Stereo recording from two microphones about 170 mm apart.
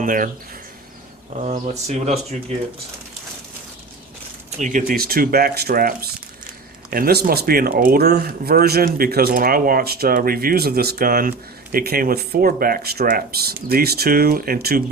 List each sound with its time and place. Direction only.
0.0 s speech: 50° right (ahead or behind)
1.4 s speech: 40° right (ahead or behind)
4.5 s speech: 50° right (ahead or behind)